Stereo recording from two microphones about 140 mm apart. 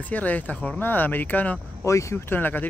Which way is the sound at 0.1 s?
10° left (ahead or behind).